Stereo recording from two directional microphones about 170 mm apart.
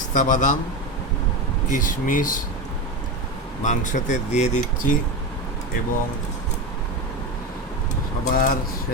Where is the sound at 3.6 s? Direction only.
45° left (ahead or behind).